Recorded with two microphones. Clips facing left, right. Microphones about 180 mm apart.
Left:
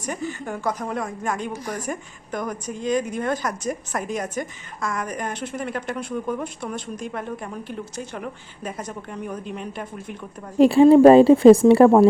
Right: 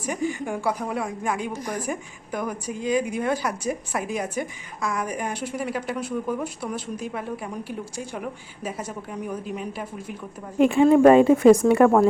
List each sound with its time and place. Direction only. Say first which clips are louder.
0.0 s speech: right 2 dB; 10° right (ahead or behind)
10.6 s speech: left 4 dB; 30° left (ahead or behind)